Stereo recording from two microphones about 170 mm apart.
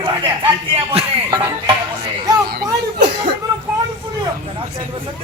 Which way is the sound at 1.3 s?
25° right (ahead or behind).